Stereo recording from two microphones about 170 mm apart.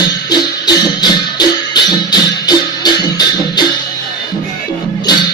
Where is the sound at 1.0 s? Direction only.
25° left (ahead or behind).